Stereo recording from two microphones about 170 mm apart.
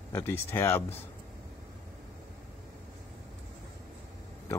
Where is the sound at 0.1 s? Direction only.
15° left (ahead or behind).